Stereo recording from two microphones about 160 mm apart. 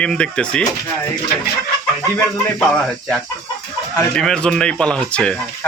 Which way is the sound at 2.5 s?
5° left (ahead or behind).